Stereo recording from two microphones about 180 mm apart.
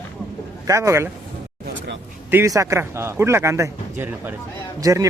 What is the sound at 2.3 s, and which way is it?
Speech, 15° right (ahead or behind).